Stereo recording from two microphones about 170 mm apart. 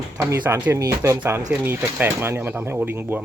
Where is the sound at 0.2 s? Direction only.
15° right (ahead or behind).